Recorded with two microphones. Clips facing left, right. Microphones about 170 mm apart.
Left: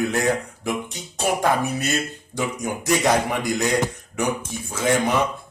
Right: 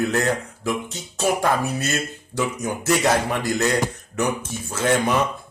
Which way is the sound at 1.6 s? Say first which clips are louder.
Left 1 dB; 15° left (ahead or behind).